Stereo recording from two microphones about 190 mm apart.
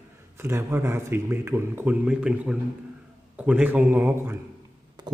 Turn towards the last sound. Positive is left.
turn(degrees=-20)  # may be behind; listen again after turning